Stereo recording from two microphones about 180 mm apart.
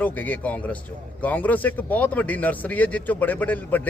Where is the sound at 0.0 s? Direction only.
10° left (ahead or behind).